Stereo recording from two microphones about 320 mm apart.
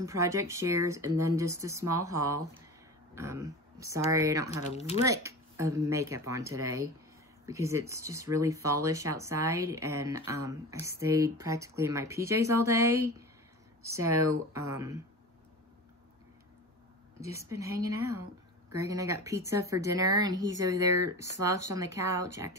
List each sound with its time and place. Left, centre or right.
0.0 s speech: centre
4.6 s speech: left
5.0 s speech: centre
17.2 s speech: centre